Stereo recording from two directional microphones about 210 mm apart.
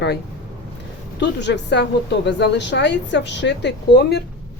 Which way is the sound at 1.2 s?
55° left (ahead or behind).